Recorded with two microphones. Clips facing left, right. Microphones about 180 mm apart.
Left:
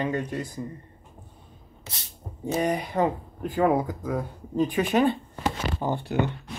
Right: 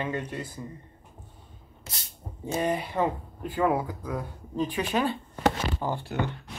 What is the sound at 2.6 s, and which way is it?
Speech, 20° left (ahead or behind).